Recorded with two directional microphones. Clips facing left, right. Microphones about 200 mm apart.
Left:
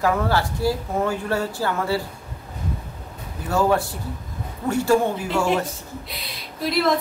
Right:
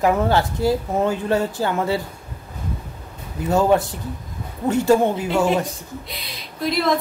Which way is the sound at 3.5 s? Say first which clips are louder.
Right 3 dB; 20° right (ahead or behind).